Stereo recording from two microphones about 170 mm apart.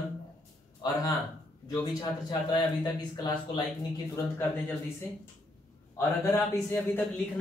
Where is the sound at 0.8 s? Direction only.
25° left (ahead or behind).